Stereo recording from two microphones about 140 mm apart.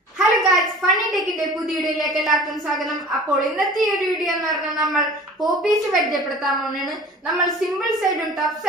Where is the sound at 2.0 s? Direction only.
Centre (ahead or behind).